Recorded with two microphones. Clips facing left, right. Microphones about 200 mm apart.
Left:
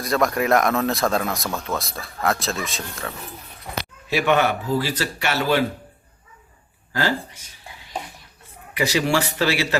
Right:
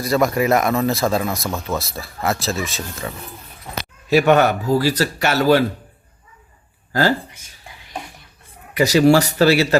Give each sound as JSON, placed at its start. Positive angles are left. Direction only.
{"t": 0.0, "sound": "speech", "side_deg": -5}
{"t": 4.1, "sound": "speech", "side_deg": -40}
{"t": 8.7, "sound": "speech", "side_deg": -40}